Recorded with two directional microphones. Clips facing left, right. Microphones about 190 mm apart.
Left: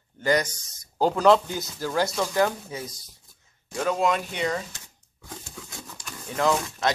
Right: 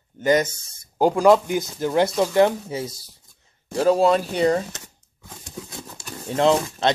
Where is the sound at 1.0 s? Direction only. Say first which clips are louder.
Right 3 dB; 10° right (ahead or behind).